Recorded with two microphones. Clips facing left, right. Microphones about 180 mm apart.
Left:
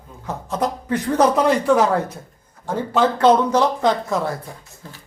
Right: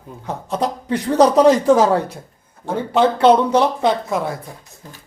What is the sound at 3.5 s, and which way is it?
Speech, 20° right (ahead or behind).